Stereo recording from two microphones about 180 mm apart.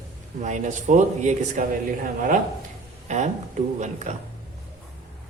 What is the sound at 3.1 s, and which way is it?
Speech, 40° right (ahead or behind).